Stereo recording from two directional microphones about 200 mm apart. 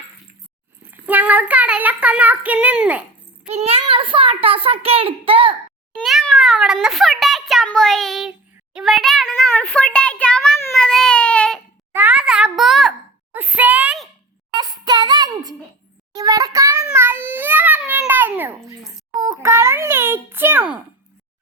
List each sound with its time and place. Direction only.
1.0 s a child's voice: 5° right (ahead or behind)
3.5 s a child's voice: 30° right (ahead or behind)
6.0 s a child's voice: centre (ahead or behind)
11.9 s a child's voice: 5° right (ahead or behind)
13.3 s a sound: 10° right (ahead or behind)
14.5 s child singing: 20° right (ahead or behind)
16.1 s a sound: 20° right (ahead or behind)
19.2 s a child's voice: 15° right (ahead or behind)